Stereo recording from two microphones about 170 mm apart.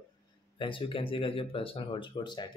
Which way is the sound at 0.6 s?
30° left (ahead or behind).